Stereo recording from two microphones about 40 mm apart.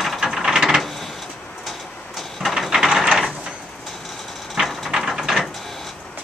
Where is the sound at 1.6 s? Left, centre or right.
Centre.